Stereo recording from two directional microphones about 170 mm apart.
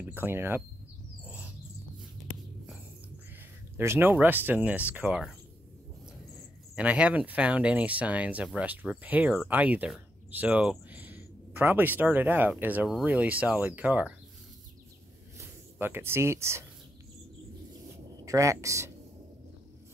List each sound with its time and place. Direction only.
0.1 s speech: 15° right (ahead or behind)
3.7 s speech: 15° right (ahead or behind)
6.7 s speech: 5° right (ahead or behind)
15.3 s speech: 15° right (ahead or behind)
18.2 s speech: 20° right (ahead or behind)